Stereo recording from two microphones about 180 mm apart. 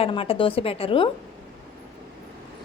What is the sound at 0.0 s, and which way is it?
A woman's voice, 30° left (ahead or behind).